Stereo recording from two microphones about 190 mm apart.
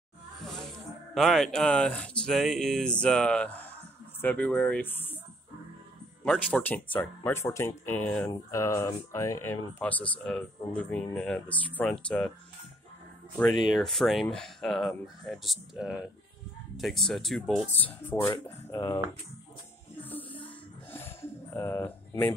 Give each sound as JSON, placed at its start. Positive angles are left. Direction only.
{"t": 0.4, "sound": "snake", "side_deg": 0}
{"t": 1.1, "sound": "speech", "side_deg": 0}
{"t": 6.2, "sound": "speech", "side_deg": 5}
{"t": 13.7, "sound": "speech", "side_deg": 0}
{"t": 20.0, "sound": "music", "side_deg": 10}
{"t": 20.4, "sound": "a sound", "side_deg": 10}